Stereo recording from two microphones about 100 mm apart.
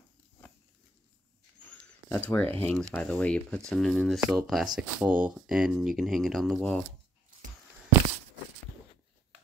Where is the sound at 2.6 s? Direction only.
15° left (ahead or behind).